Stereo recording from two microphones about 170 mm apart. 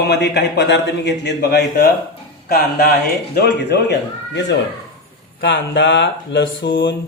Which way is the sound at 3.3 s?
80° left.